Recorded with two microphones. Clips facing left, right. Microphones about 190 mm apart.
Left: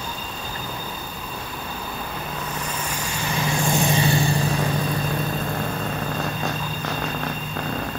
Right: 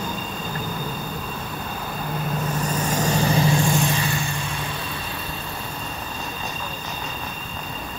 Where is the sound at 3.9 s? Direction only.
25° left (ahead or behind).